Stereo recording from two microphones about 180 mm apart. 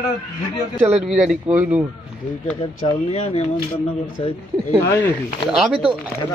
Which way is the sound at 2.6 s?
35° left (ahead or behind).